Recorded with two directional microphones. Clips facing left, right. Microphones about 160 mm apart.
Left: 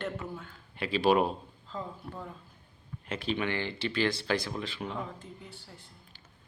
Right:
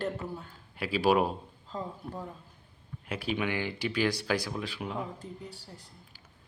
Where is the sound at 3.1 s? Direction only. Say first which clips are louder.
Even; 10° right (ahead or behind).